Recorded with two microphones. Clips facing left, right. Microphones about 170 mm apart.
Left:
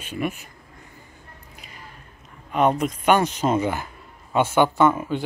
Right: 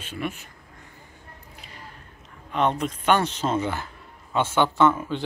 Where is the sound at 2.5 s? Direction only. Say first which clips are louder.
Left 4 dB; 10° left (ahead or behind).